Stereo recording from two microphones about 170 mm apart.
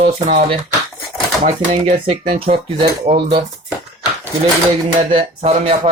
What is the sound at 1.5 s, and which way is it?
Speech, 40° right (ahead or behind).